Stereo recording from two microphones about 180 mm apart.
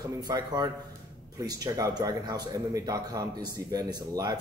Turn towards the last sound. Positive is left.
turn(degrees=-20)  # may be behind; listen again after turning